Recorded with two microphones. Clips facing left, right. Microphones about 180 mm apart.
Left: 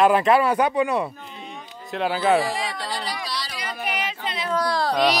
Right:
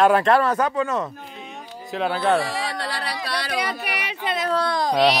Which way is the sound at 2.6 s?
65° right (ahead or behind).